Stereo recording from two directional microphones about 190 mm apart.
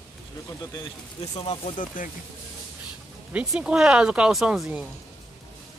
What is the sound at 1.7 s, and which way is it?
Speech, 45° left (ahead or behind).